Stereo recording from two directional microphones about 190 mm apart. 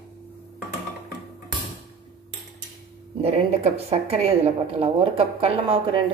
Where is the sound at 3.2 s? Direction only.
35° right (ahead or behind).